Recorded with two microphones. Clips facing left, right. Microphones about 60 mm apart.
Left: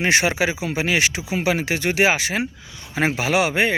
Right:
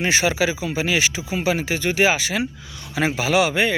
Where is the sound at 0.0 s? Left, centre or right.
Left.